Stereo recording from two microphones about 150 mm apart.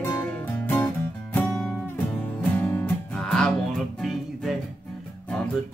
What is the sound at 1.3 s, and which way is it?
Music, centre (ahead or behind).